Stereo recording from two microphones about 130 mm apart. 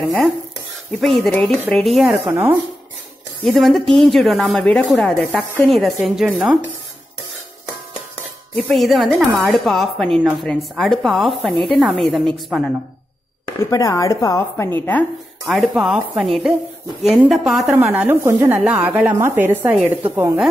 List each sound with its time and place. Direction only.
1.0 s speech: centre (ahead or behind)
2.0 s speech: 20° right (ahead or behind)
3.4 s speech: centre (ahead or behind)
8.6 s speech: centre (ahead or behind)
13.6 s chopping: 25° left (ahead or behind)
15.4 s a woman's voice: centre (ahead or behind)
18.2 s speech: 20° right (ahead or behind)
18.6 s a woman's voice: 10° right (ahead or behind)